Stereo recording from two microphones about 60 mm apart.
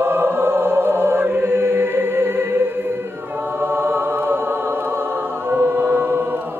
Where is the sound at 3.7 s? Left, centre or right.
Right.